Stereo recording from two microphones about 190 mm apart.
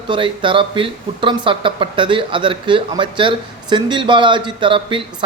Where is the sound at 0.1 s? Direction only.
25° right (ahead or behind).